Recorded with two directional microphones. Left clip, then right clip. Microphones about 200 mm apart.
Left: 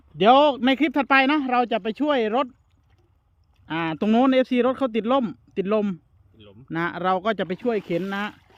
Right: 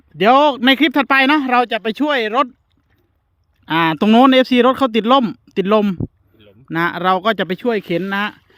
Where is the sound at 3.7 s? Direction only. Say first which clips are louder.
Right 10 dB; 45° right (ahead or behind).